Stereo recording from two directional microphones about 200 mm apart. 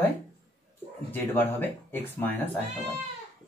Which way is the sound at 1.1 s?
10° left (ahead or behind).